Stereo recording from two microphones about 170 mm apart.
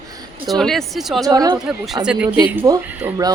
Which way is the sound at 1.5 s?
Centre (ahead or behind).